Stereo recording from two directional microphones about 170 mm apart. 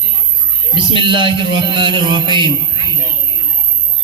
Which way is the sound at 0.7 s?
30° right (ahead or behind).